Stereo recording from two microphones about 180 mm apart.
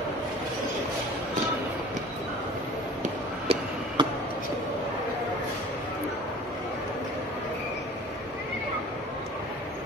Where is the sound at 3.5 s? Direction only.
30° right (ahead or behind).